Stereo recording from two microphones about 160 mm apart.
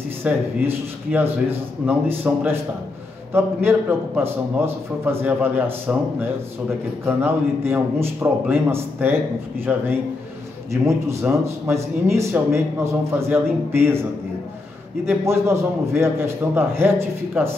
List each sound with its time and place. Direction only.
0.2 s speech: 15° right (ahead or behind)
7.1 s speech: 15° right (ahead or behind)
10.7 s speech: 20° right (ahead or behind)
15.0 s speech: 15° right (ahead or behind)